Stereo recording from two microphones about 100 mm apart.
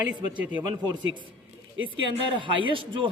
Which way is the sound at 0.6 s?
45° right (ahead or behind).